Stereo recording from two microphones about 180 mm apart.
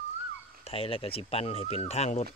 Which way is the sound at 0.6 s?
30° left (ahead or behind).